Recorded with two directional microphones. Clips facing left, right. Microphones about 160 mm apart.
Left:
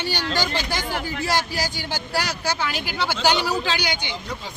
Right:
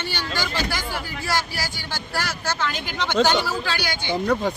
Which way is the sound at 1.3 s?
20° left (ahead or behind).